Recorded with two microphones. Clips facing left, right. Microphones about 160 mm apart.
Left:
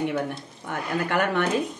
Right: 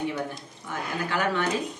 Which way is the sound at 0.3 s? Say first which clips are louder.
Left 4 dB; 60° left (ahead or behind).